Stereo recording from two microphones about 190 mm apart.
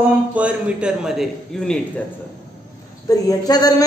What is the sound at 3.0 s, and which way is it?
Speech, 20° left (ahead or behind).